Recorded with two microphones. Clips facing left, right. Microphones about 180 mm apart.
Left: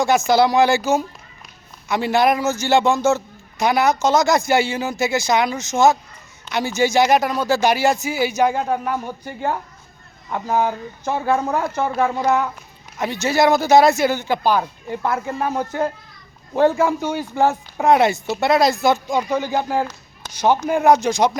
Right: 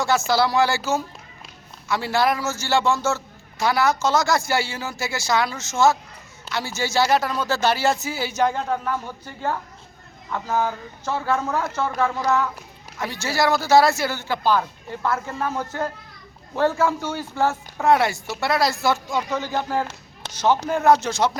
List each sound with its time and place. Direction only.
0.0 s a man's voice: 15° left (ahead or behind)